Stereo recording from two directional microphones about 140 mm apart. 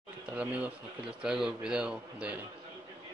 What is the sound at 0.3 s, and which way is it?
Speech, 10° right (ahead or behind).